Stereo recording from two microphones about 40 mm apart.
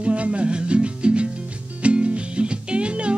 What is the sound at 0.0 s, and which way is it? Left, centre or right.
Music, right.